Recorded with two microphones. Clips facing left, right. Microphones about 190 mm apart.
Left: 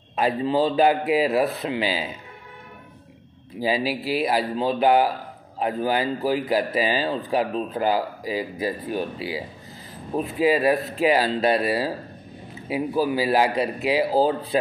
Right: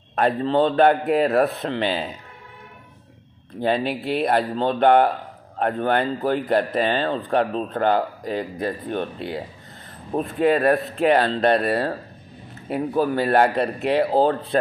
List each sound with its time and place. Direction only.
0.2 s speech: 5° left (ahead or behind)
3.5 s speech: 5° left (ahead or behind)